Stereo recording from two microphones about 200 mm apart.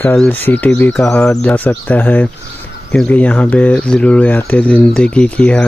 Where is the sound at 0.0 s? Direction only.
10° left (ahead or behind).